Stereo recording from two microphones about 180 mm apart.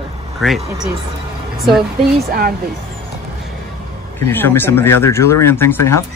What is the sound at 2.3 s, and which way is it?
Speech, 55° right (ahead or behind).